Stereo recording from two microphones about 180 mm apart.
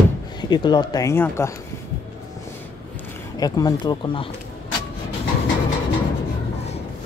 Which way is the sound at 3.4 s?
20° left (ahead or behind).